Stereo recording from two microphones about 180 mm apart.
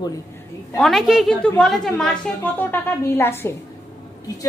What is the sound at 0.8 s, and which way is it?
A woman's voice, centre (ahead or behind).